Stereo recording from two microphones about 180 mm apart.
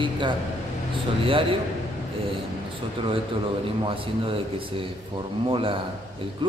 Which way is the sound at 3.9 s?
30° right (ahead or behind).